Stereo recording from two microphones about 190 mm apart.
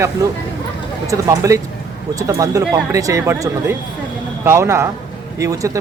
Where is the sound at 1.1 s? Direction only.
15° right (ahead or behind).